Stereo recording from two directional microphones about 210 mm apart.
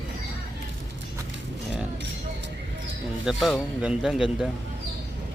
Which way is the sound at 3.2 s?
Centre (ahead or behind).